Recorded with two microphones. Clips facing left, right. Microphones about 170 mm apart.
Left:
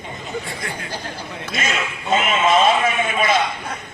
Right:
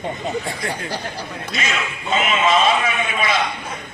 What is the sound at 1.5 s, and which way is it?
A man's voice, 50° left (ahead or behind).